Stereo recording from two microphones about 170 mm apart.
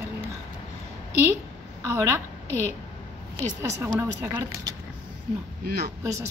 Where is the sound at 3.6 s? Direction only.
15° right (ahead or behind).